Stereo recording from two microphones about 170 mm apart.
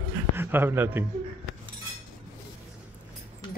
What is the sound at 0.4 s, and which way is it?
Speech, 10° right (ahead or behind).